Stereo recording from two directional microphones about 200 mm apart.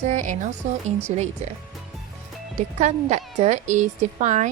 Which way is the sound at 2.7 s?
35° right (ahead or behind).